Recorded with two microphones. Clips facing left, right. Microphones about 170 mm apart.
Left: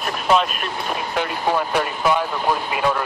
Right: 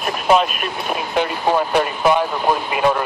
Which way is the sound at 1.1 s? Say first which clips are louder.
Right 4 dB; 25° right (ahead or behind).